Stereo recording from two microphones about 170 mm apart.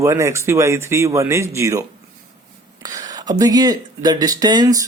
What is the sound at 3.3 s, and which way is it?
Speech, 20° right (ahead or behind).